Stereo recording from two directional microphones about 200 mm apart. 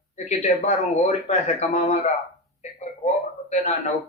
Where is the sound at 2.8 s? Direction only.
35° left (ahead or behind).